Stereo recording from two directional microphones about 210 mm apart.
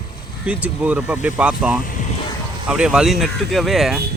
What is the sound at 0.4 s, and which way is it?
Speech, 5° right (ahead or behind).